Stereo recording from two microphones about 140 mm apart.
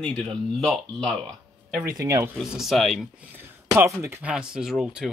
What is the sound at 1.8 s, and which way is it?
Speech, 25° right (ahead or behind).